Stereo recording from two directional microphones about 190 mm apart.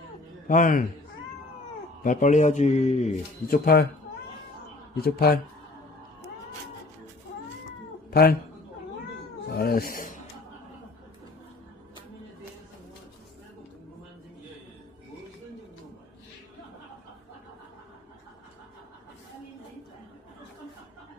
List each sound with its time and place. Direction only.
0.5 s speech: 45° left (ahead or behind)
2.0 s a man's voice: 40° left (ahead or behind)
5.0 s speech: 55° left (ahead or behind)
8.1 s speech: 50° left (ahead or behind)
9.5 s speech: 55° left (ahead or behind)